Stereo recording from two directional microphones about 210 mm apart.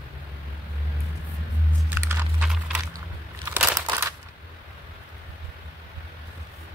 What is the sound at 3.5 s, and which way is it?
Crumpling, 10° right (ahead or behind).